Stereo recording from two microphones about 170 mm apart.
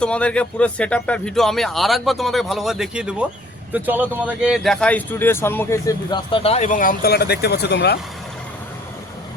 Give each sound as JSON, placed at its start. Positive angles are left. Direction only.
{"t": 0.0, "sound": "speech", "side_deg": 5}